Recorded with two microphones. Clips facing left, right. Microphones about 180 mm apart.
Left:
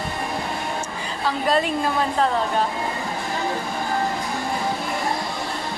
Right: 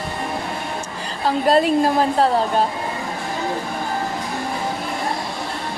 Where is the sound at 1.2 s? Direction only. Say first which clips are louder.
Right 5 dB; 40° right (ahead or behind).